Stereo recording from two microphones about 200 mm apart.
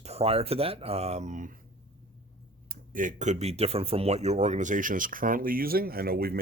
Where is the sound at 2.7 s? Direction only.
40° right (ahead or behind).